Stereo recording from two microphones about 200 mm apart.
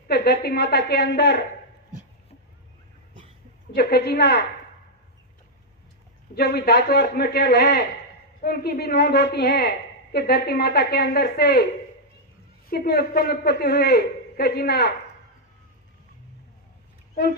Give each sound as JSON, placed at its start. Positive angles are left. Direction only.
{"t": 0.1, "sound": "a woman's voice", "side_deg": 55}
{"t": 3.8, "sound": "a woman's voice", "side_deg": 55}
{"t": 6.3, "sound": "a woman's voice", "side_deg": 55}
{"t": 12.6, "sound": "a woman's voice", "side_deg": 50}